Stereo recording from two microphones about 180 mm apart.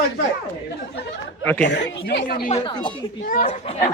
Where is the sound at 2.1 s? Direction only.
60° left (ahead or behind).